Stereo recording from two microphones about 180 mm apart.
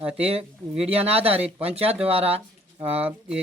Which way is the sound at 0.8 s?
35° right (ahead or behind).